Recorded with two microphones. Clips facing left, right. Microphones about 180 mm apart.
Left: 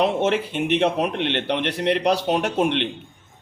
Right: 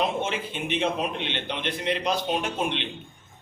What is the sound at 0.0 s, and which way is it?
A man's voice, 70° left (ahead or behind).